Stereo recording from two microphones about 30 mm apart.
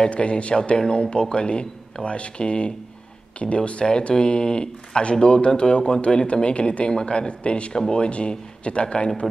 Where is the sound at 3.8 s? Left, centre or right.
Centre.